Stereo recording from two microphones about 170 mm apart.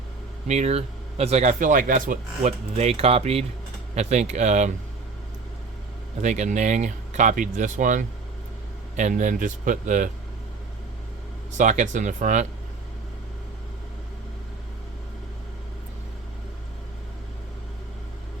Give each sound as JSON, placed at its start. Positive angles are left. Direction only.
{"t": 0.4, "sound": "speech", "side_deg": -40}
{"t": 6.2, "sound": "speech", "side_deg": -45}
{"t": 11.5, "sound": "speech", "side_deg": -45}